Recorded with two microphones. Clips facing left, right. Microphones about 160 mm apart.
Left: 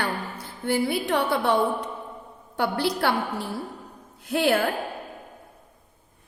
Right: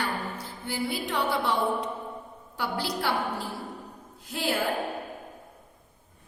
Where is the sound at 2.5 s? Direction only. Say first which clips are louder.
Left 6 dB; 60° left (ahead or behind).